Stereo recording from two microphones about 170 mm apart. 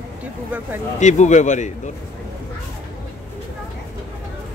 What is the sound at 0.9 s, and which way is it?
Speech, 45° left (ahead or behind).